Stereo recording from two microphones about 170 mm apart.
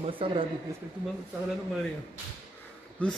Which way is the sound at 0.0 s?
30° right (ahead or behind).